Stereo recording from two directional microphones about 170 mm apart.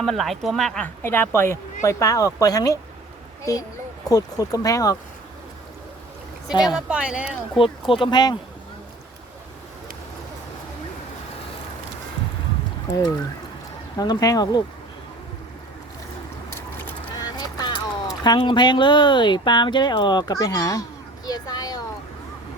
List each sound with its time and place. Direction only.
0.0 s speech: centre (ahead or behind)
1.0 s speech: 15° left (ahead or behind)
6.7 s speech: 5° right (ahead or behind)
7.6 s speech: 30° left (ahead or behind)
13.9 s speech: 20° left (ahead or behind)
17.2 s speech: 25° left (ahead or behind)
21.2 s a sound: 25° left (ahead or behind)